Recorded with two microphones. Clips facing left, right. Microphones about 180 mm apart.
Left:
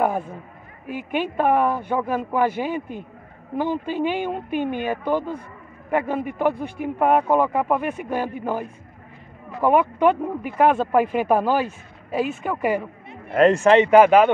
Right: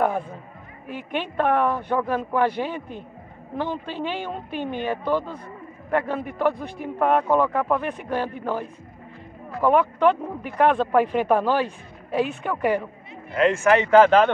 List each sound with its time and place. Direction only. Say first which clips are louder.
0.8 s speech: left 4 dB; 10° left (ahead or behind)
13.1 s speech: left 4 dB; 45° left (ahead or behind)
13.7 s speech: left 1 dB; 20° left (ahead or behind)